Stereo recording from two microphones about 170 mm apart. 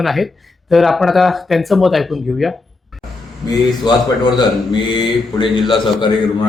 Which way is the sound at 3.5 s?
25° left (ahead or behind).